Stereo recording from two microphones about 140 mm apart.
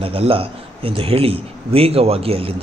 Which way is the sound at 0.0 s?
40° right (ahead or behind).